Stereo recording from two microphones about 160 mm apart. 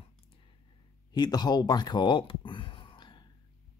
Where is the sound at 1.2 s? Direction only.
25° left (ahead or behind).